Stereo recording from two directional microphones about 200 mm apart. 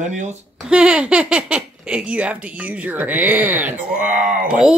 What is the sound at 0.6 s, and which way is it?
Speech, 5° right (ahead or behind).